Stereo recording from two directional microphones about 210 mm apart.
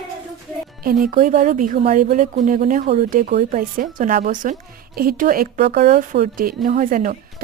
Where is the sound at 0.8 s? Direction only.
40° right (ahead or behind).